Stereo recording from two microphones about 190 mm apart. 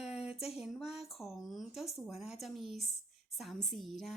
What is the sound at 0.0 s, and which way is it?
A woman's voice, 5° right (ahead or behind).